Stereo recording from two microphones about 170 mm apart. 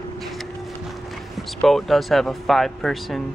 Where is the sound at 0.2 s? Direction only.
Centre (ahead or behind).